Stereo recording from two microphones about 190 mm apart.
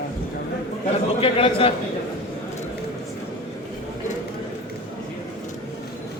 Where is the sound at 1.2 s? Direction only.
30° left (ahead or behind).